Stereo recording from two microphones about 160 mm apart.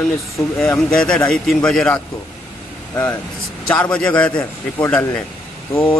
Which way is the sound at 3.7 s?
5° left (ahead or behind).